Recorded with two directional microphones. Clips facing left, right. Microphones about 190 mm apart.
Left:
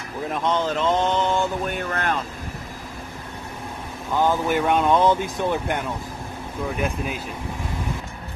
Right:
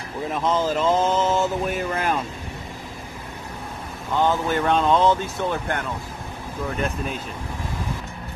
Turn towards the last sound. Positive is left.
turn(degrees=10)  # may be behind; listen again after turning